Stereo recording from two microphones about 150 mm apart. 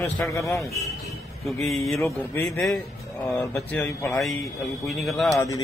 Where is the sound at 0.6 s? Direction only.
Centre (ahead or behind).